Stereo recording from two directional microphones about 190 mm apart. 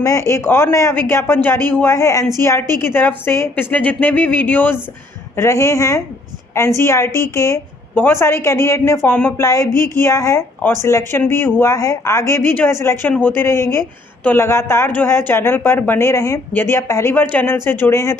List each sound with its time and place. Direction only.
0.0 s a woman's voice: 15° left (ahead or behind)